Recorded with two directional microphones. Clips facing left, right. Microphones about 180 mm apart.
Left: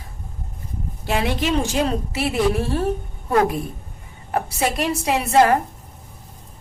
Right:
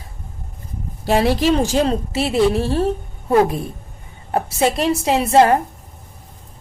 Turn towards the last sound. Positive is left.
turn(degrees=-25)  # may be behind; listen again after turning